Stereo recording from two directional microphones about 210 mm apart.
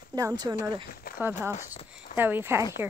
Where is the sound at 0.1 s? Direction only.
15° right (ahead or behind).